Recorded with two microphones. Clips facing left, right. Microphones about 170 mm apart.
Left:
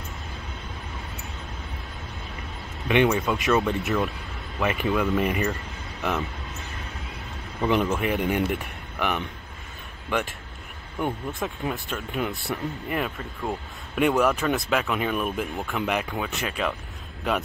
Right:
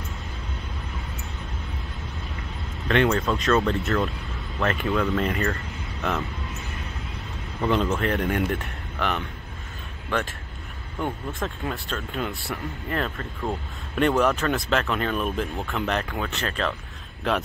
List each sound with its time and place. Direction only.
2.9 s speech: 15° left (ahead or behind)
7.6 s speech: 15° left (ahead or behind)